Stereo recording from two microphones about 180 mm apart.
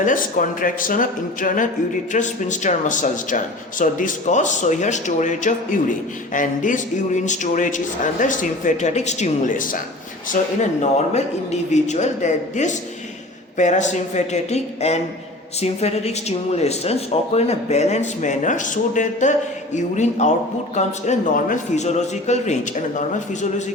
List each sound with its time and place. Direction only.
0.0 s a man's voice: 45° left (ahead or behind)